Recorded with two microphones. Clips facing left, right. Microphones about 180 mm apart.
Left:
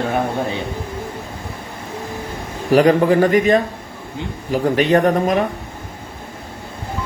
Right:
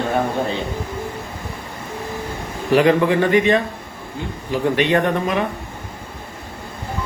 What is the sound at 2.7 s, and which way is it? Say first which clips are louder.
Speech: left 2 dB; 40° left (ahead or behind).